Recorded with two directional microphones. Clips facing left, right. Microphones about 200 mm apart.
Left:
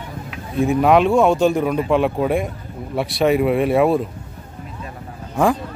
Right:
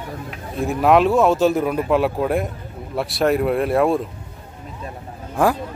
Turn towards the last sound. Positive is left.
turn(degrees=-5)  # may be behind; listen again after turning